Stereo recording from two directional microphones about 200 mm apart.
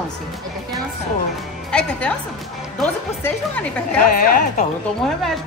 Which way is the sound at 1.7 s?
5° left (ahead or behind).